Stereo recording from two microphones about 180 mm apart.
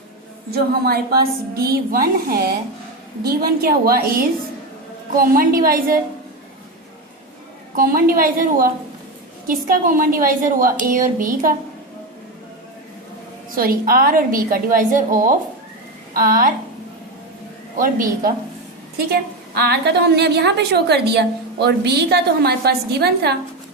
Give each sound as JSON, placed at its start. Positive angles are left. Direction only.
{"t": 0.5, "sound": "a woman's voice", "side_deg": -60}
{"t": 7.8, "sound": "a woman's voice", "side_deg": -50}
{"t": 13.6, "sound": "a woman's voice", "side_deg": -55}
{"t": 17.7, "sound": "a woman's voice", "side_deg": -50}
{"t": 18.9, "sound": "a woman's voice", "side_deg": -65}